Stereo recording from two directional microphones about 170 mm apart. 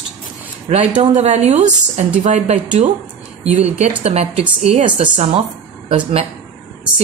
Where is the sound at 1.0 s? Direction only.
40° right (ahead or behind).